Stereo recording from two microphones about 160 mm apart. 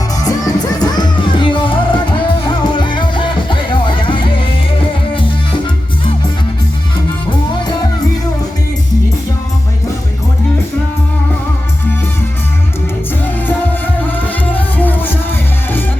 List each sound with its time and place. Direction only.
0.3 s music: 25° left (ahead or behind)
14.5 s music: 10° left (ahead or behind)